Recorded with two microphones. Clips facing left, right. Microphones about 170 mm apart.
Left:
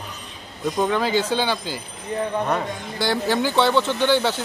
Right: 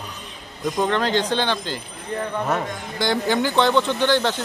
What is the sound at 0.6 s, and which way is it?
Speech, 5° left (ahead or behind).